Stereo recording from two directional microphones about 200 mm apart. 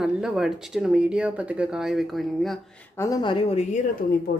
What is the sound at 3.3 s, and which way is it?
Speech, 30° left (ahead or behind).